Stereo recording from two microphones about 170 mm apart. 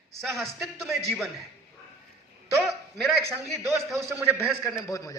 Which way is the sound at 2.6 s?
Centre (ahead or behind).